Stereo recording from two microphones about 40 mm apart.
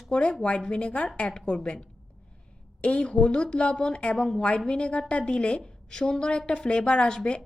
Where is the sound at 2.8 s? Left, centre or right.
Left.